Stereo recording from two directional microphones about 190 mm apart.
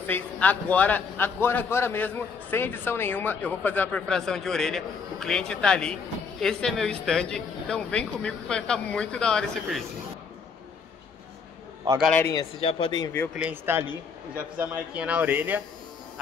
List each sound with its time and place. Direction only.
0.0 s a man's voice: 10° left (ahead or behind)
12.0 s a man's voice: 10° left (ahead or behind)
12.4 s speech: 30° left (ahead or behind)
13.3 s speech: 10° right (ahead or behind)